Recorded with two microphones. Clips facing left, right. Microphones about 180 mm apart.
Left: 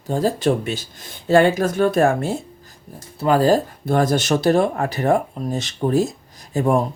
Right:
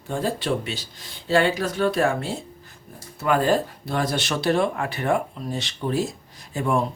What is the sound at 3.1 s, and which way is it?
Speech, 35° left (ahead or behind).